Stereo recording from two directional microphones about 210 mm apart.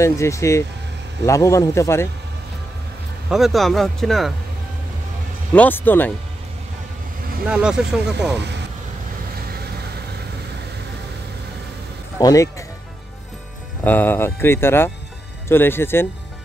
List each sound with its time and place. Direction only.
0.0 s speech: 15° left (ahead or behind)
3.3 s speech: centre (ahead or behind)
5.5 s speech: 10° left (ahead or behind)
7.4 s speech: 5° right (ahead or behind)
8.4 s speech: 55° right (ahead or behind)
12.2 s speech: 15° left (ahead or behind)
13.8 s speech: 10° left (ahead or behind)